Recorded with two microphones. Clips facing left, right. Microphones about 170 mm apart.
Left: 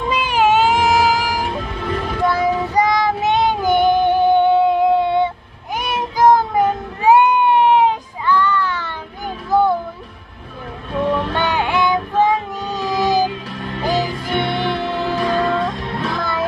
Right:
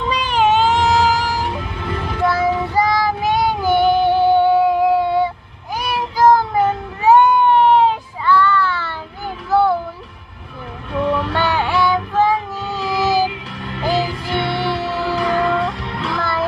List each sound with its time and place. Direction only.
0.1 s a sound: 10° left (ahead or behind)
2.2 s child singing: 15° left (ahead or behind)
7.1 s a sound: 10° left (ahead or behind)
9.5 s music: 15° left (ahead or behind)
10.9 s female singing: 20° left (ahead or behind)
13.8 s music: 20° left (ahead or behind)